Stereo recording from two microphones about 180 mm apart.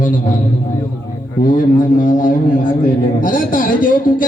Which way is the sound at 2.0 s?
50° left (ahead or behind).